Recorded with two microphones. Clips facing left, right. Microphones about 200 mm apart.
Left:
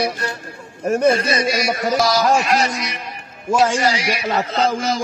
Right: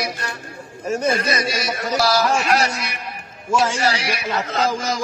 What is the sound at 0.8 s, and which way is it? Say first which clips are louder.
Speech: left 6 dB; 55° left (ahead or behind).